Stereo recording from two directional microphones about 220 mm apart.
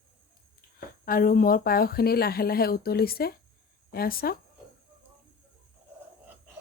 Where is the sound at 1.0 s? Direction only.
40° left (ahead or behind).